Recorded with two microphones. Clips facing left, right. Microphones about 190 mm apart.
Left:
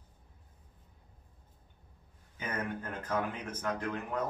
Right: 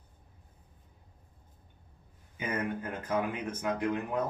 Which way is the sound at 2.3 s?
10° right (ahead or behind).